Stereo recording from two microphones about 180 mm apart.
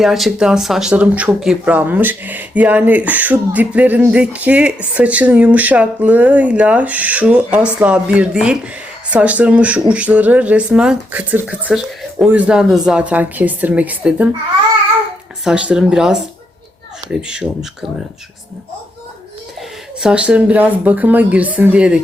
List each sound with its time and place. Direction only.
0.0 s speech: centre (ahead or behind)
15.4 s speech: 5° right (ahead or behind)
20.0 s speech: 5° right (ahead or behind)